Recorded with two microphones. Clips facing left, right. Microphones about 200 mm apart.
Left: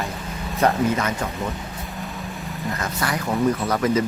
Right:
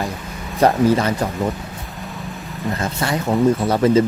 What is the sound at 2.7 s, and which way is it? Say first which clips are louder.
Speech: right 4 dB; 25° right (ahead or behind).